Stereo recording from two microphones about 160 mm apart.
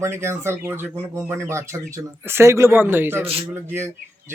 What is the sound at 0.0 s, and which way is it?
Speech, 15° right (ahead or behind).